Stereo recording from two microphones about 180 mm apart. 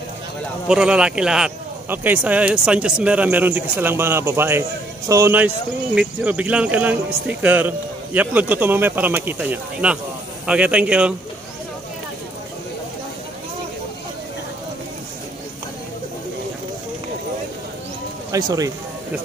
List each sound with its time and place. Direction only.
0.7 s speech: 5° right (ahead or behind)
18.3 s speech: 20° right (ahead or behind)